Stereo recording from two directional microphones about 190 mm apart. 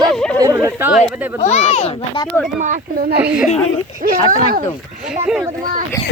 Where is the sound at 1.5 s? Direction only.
35° left (ahead or behind).